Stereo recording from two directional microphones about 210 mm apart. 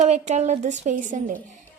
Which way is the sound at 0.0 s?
35° right (ahead or behind).